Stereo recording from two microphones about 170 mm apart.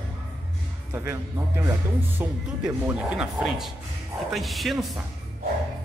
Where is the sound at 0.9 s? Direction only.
15° right (ahead or behind).